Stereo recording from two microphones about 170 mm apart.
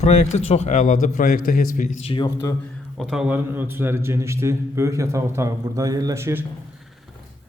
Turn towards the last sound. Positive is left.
turn(degrees=-15)  # may be behind; listen again after turning